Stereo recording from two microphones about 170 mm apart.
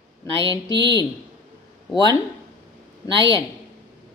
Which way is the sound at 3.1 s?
20° left (ahead or behind).